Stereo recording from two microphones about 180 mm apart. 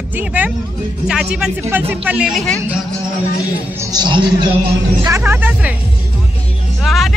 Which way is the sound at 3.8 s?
20° right (ahead or behind).